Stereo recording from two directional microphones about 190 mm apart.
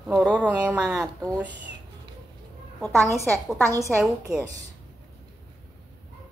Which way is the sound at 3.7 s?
15° right (ahead or behind).